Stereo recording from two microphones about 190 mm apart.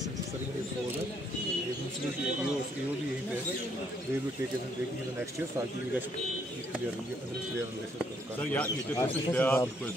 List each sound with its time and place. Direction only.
8.5 s speech: 10° left (ahead or behind)